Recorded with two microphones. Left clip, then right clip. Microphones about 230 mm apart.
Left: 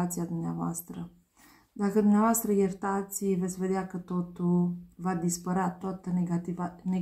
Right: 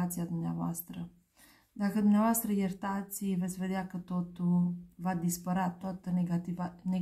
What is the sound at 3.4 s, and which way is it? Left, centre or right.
Speech, right.